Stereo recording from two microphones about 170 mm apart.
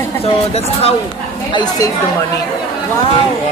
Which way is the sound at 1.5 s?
25° left (ahead or behind).